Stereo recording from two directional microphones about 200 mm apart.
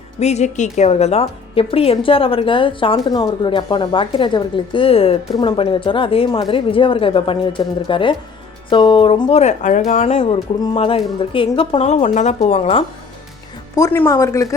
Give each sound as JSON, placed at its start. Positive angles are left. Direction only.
{"t": 0.2, "sound": "a woman's voice", "side_deg": 35}
{"t": 9.4, "sound": "speech", "side_deg": 35}
{"t": 13.7, "sound": "speech", "side_deg": 10}